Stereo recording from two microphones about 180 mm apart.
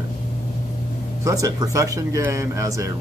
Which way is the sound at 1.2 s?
20° right (ahead or behind).